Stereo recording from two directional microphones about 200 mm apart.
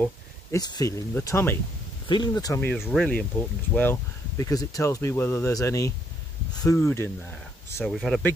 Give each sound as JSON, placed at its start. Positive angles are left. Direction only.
{"t": 0.0, "sound": "speech", "side_deg": 15}
{"t": 2.8, "sound": "speech", "side_deg": 0}
{"t": 7.8, "sound": "speech", "side_deg": 0}